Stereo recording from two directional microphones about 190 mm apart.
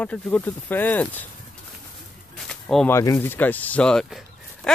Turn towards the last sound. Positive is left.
turn(degrees=0)  # may be behind; listen again after turning